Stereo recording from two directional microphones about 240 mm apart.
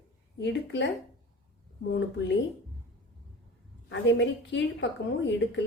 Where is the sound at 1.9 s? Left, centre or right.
Left.